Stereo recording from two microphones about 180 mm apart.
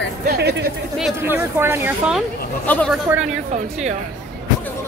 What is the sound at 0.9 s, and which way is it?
Speech, 5° right (ahead or behind).